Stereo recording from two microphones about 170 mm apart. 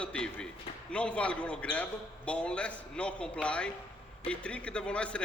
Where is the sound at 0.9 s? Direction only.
5° left (ahead or behind).